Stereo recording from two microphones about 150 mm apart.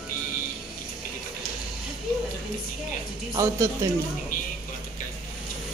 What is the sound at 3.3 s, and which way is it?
Speech, 20° right (ahead or behind).